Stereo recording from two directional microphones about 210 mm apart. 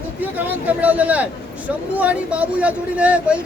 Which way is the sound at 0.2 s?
10° right (ahead or behind).